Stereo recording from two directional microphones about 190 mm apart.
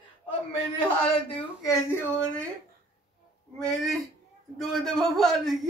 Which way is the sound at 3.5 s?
Centre (ahead or behind).